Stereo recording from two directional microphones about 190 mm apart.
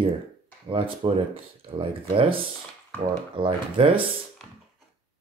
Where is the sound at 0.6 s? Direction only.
30° right (ahead or behind).